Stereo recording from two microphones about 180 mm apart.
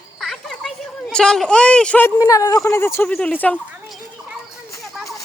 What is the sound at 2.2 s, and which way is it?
Speech, 20° left (ahead or behind).